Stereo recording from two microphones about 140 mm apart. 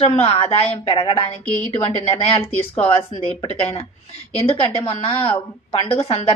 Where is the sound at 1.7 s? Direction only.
40° left (ahead or behind).